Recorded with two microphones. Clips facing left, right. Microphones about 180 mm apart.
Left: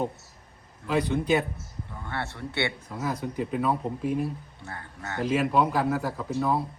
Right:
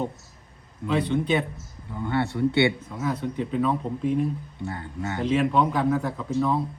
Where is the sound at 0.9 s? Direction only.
10° left (ahead or behind).